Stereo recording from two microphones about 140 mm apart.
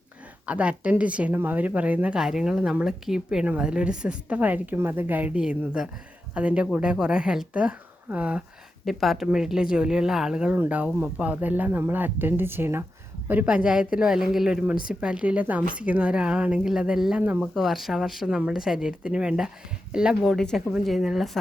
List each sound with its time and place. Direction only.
0.4 s a woman's voice: 10° right (ahead or behind)